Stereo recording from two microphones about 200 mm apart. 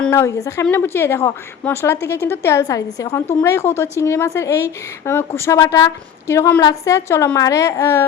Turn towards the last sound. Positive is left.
turn(degrees=15)  # may be behind; listen again after turning